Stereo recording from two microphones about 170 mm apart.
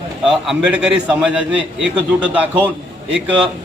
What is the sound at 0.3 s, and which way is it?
A man's voice, 5° right (ahead or behind).